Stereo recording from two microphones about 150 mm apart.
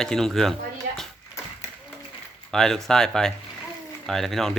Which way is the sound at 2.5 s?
5° left (ahead or behind).